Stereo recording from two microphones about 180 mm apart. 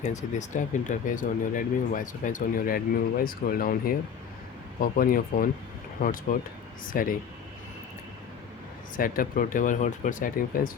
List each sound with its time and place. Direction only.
0.1 s speech: 40° left (ahead or behind)
9.0 s speech: 50° left (ahead or behind)